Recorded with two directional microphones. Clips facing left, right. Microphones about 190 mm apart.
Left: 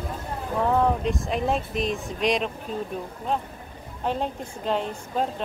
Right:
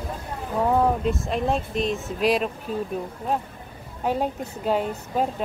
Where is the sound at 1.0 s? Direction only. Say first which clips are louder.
Right 1 dB; centre (ahead or behind).